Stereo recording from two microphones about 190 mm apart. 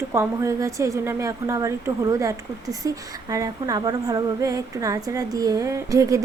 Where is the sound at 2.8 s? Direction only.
15° right (ahead or behind).